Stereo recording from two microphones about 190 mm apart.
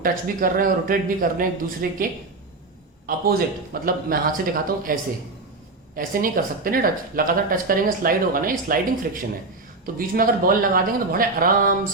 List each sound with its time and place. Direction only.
0.0 s speech: 45° right (ahead or behind)
3.8 s speech: 50° right (ahead or behind)
6.0 s speech: 50° right (ahead or behind)